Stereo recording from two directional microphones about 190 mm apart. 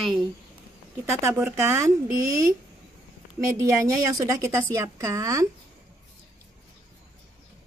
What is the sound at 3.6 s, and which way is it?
A woman's voice, 15° right (ahead or behind).